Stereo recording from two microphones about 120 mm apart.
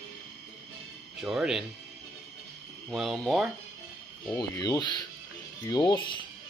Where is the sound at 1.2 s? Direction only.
5° right (ahead or behind).